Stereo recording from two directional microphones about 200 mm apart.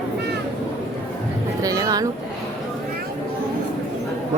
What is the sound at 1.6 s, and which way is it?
Music, 20° right (ahead or behind).